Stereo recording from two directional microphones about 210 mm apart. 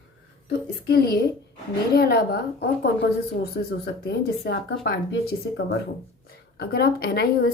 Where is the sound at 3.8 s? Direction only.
50° left (ahead or behind).